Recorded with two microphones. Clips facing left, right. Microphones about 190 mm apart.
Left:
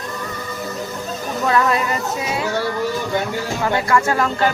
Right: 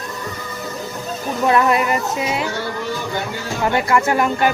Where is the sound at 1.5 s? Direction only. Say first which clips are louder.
Right 2 dB; 20° right (ahead or behind).